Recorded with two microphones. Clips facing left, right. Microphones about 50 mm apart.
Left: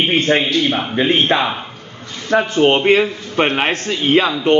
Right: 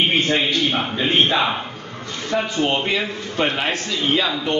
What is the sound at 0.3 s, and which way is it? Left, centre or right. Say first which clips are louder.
A man's voice: left 4 dB; left.